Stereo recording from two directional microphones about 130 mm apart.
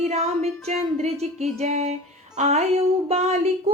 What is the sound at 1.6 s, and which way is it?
Music, 60° right (ahead or behind).